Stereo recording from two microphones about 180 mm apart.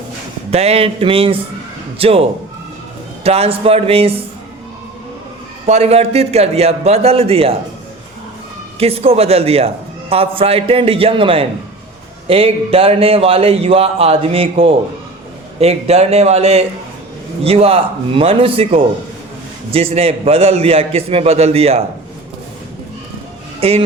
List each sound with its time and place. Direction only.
0.5 s a man's voice: 35° right (ahead or behind)
3.2 s a man's voice: 35° right (ahead or behind)
5.6 s a man's voice: 35° right (ahead or behind)
8.8 s a man's voice: 35° right (ahead or behind)
23.6 s speech: 35° right (ahead or behind)